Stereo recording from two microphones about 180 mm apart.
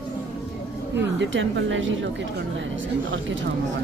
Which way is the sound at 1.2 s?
90° right.